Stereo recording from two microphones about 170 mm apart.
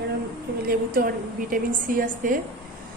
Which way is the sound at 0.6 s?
60° right (ahead or behind).